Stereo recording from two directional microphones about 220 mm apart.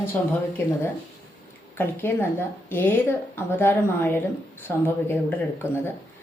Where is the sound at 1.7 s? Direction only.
10° left (ahead or behind).